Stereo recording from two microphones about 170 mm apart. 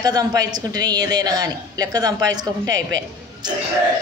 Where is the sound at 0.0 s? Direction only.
20° right (ahead or behind).